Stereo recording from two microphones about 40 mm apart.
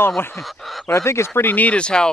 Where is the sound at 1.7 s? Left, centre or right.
Left.